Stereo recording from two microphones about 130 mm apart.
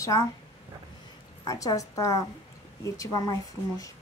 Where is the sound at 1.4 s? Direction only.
30° left (ahead or behind).